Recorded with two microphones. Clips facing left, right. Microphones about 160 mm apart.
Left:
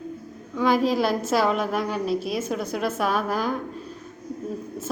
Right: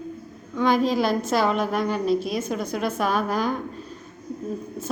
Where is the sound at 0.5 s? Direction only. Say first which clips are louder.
Even; 5° left (ahead or behind).